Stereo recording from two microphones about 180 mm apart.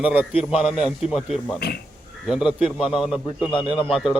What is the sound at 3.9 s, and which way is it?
Speech, 5° right (ahead or behind).